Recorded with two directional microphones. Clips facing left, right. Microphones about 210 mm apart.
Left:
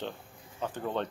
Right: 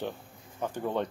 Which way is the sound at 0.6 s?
10° right (ahead or behind).